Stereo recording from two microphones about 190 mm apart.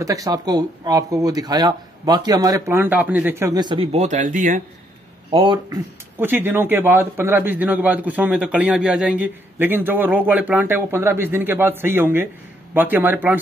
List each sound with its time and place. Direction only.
0.0 s speech: 15° right (ahead or behind); by 4.6 s 40° right (ahead or behind)
5.3 s speech: 25° right (ahead or behind)
6.1 s a man's voice: 10° right (ahead or behind)